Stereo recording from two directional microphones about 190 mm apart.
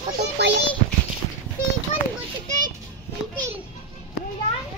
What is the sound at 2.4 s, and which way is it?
Children playing, 45° right (ahead or behind).